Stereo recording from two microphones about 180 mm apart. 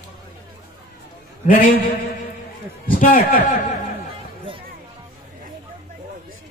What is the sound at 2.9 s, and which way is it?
Speech, 50° left (ahead or behind).